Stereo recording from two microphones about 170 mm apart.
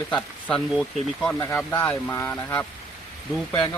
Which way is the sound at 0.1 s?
5° left (ahead or behind).